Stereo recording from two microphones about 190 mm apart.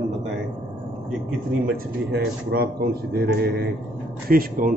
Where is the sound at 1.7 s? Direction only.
55° right (ahead or behind).